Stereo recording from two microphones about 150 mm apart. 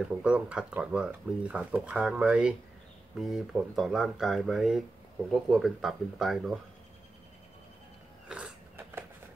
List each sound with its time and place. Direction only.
0.2 s speech: 5° right (ahead or behind)
8.3 s mechanisms: 10° right (ahead or behind)